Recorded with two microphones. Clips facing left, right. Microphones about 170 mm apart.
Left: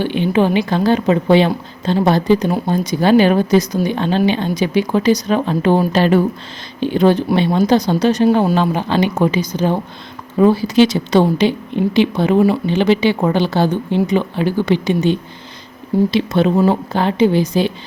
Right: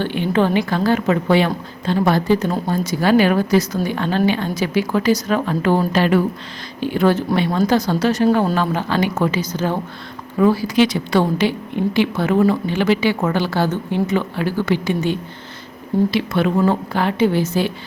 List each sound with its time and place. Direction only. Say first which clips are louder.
0.0 s a woman's voice: left 3 dB; 15° left (ahead or behind)